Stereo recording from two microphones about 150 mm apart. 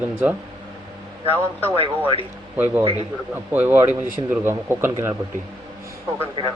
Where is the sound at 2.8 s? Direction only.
40° right (ahead or behind).